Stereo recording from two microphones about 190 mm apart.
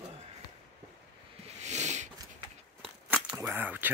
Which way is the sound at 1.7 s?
35° right (ahead or behind).